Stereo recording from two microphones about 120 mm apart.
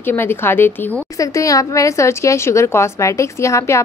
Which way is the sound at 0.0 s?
20° left (ahead or behind).